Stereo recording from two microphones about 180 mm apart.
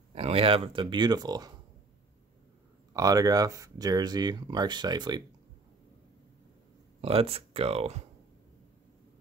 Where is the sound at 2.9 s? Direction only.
20° right (ahead or behind).